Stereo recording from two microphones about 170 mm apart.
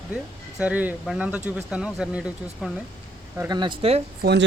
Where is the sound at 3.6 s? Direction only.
30° right (ahead or behind).